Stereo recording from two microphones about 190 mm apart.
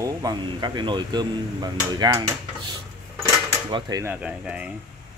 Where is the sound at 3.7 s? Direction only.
15° right (ahead or behind).